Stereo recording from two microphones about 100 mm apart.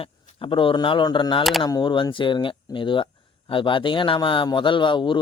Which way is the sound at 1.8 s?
55° left (ahead or behind).